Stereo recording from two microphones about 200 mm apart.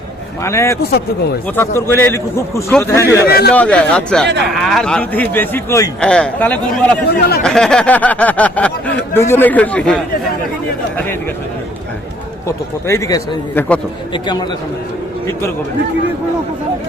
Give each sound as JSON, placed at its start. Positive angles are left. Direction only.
{"t": 0.4, "sound": "speech", "side_deg": 15}
{"t": 0.8, "sound": "speech", "side_deg": 55}
{"t": 1.5, "sound": "a man's voice", "side_deg": 10}
{"t": 7.2, "sound": "speech", "side_deg": 50}
{"t": 7.4, "sound": "speech", "side_deg": 5}
{"t": 12.5, "sound": "speech", "side_deg": 15}
{"t": 14.1, "sound": "a man's voice", "side_deg": 20}